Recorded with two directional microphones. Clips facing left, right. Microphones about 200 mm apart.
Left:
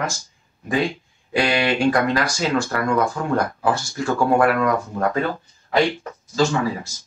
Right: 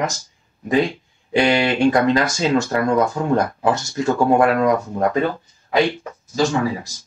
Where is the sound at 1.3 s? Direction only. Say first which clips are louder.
Right 3 dB; 25° right (ahead or behind).